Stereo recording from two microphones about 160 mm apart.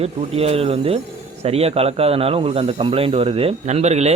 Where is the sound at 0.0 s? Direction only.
40° right (ahead or behind).